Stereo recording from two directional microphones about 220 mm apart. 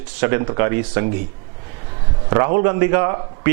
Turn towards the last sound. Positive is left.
turn(degrees=-15)  # may be behind; listen again after turning